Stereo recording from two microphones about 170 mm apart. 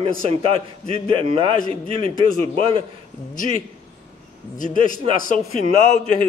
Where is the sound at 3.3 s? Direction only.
50° left (ahead or behind).